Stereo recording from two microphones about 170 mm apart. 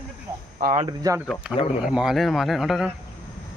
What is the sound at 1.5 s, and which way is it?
Speech, 35° left (ahead or behind).